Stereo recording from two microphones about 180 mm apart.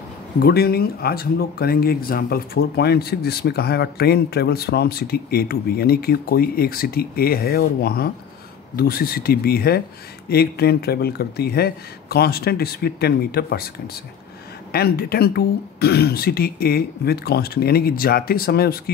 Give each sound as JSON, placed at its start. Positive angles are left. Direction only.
{"t": 0.4, "sound": "speech", "side_deg": 60}
{"t": 14.7, "sound": "speech", "side_deg": 60}